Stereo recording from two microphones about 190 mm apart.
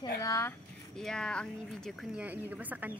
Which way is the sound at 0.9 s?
5° left (ahead or behind).